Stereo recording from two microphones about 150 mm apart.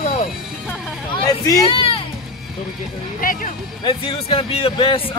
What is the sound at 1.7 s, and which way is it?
Music, 35° left (ahead or behind).